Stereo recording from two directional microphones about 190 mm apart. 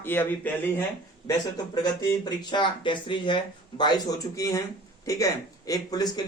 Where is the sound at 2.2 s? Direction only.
25° left (ahead or behind).